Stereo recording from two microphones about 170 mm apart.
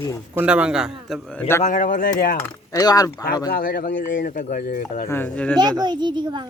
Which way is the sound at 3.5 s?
60° left (ahead or behind).